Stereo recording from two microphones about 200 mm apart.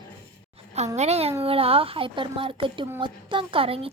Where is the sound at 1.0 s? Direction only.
30° right (ahead or behind).